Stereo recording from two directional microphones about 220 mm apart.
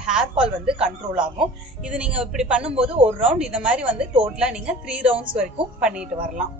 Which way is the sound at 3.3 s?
5° right (ahead or behind).